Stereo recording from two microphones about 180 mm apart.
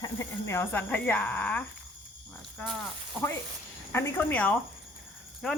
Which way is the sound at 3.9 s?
15° left (ahead or behind).